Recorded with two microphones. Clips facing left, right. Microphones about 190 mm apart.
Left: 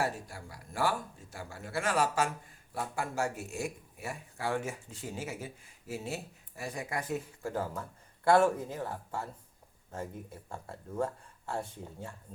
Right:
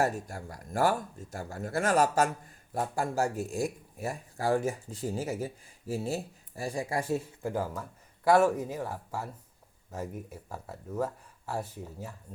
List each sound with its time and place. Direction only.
0.0 s speech: 45° right (ahead or behind)
7.4 s speech: 15° right (ahead or behind)